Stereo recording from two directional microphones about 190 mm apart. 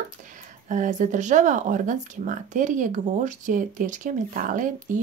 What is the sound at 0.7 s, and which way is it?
Speech, 40° right (ahead or behind).